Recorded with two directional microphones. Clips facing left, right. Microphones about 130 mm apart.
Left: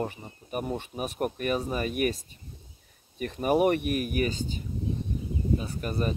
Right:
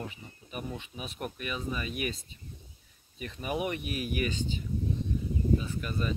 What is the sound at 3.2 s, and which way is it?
Speech, 50° left (ahead or behind).